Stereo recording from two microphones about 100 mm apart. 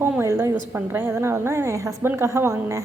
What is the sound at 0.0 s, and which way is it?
A woman's voice, 25° right (ahead or behind).